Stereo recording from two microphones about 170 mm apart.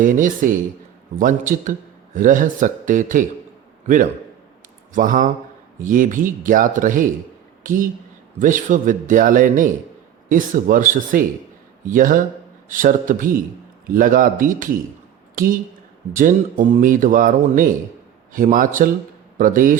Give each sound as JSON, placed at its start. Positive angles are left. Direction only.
{"t": 0.0, "sound": "speech", "side_deg": -50}
{"t": 4.9, "sound": "a woman's voice", "side_deg": -50}